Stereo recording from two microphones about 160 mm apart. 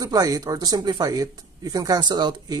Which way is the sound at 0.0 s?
25° right (ahead or behind).